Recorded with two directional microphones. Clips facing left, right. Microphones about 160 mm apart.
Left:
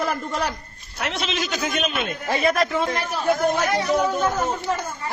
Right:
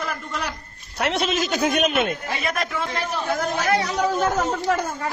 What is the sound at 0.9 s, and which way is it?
A man's voice, 60° right (ahead or behind).